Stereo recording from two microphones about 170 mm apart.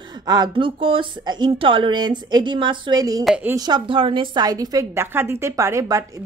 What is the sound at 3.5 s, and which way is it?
A woman's voice, 25° right (ahead or behind).